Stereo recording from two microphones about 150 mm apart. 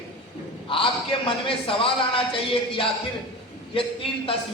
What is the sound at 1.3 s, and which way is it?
Speech, 35° left (ahead or behind).